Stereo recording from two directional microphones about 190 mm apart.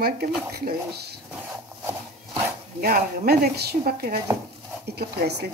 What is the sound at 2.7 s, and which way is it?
A woman's voice, 50° right (ahead or behind).